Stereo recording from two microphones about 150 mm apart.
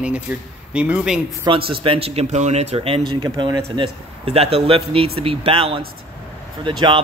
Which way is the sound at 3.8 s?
40° right (ahead or behind).